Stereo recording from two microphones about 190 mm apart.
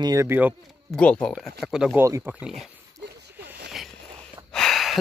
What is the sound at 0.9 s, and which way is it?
Speech, 5° left (ahead or behind).